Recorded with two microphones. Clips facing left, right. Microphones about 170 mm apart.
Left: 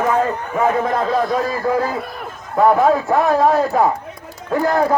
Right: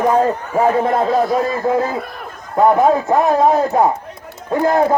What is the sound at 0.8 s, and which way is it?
A man's voice, 30° right (ahead or behind).